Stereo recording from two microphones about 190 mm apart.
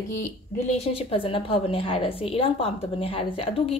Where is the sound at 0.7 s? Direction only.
30° left (ahead or behind).